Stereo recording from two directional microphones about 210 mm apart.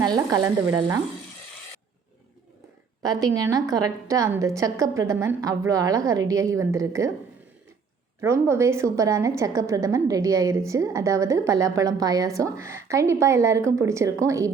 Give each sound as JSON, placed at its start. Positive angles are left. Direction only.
{"t": 0.0, "sound": "a woman's voice", "side_deg": -15}
{"t": 3.0, "sound": "a woman's voice", "side_deg": -20}
{"t": 8.2, "sound": "a woman's voice", "side_deg": -15}